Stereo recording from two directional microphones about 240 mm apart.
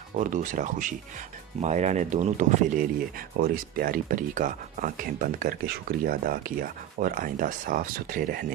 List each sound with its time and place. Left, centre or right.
0.2 s speech: right